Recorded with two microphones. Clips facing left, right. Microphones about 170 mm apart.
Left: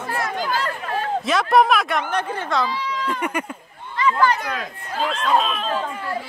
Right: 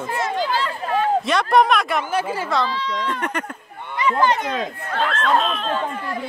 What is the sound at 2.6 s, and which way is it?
Speech, 10° left (ahead or behind).